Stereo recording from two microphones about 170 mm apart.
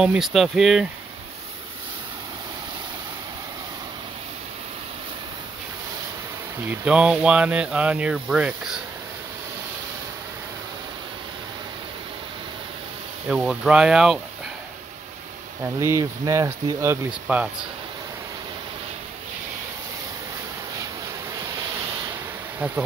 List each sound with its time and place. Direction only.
0.0 s speech: centre (ahead or behind)
6.7 s speech: 10° right (ahead or behind)
13.3 s speech: 5° right (ahead or behind)
15.6 s speech: 15° right (ahead or behind)
21.4 s a sound: 20° right (ahead or behind)